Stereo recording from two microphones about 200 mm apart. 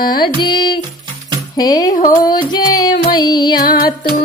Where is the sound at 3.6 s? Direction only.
45° left (ahead or behind).